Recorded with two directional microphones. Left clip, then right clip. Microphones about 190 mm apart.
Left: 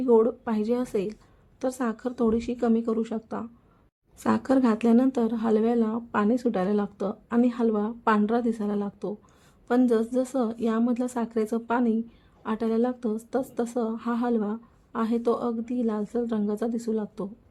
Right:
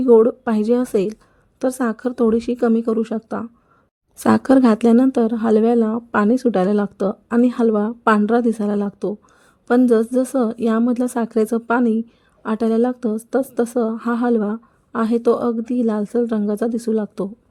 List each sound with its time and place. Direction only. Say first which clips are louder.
0.0 s a woman's voice: right 9 dB; 30° right (ahead or behind)